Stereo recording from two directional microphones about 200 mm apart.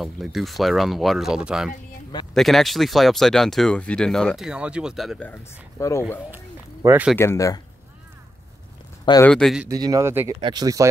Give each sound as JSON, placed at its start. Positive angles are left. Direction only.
{"t": 0.0, "sound": "speech", "side_deg": 0}
{"t": 5.3, "sound": "speech", "side_deg": 15}
{"t": 6.3, "sound": "run", "side_deg": -10}
{"t": 7.2, "sound": "speech", "side_deg": 15}
{"t": 9.2, "sound": "speech", "side_deg": 5}
{"t": 9.7, "sound": "speech", "side_deg": -15}